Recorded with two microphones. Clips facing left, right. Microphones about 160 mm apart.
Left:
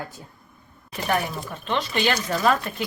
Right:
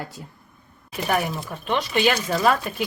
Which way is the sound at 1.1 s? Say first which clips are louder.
Right 1 dB; 10° right (ahead or behind).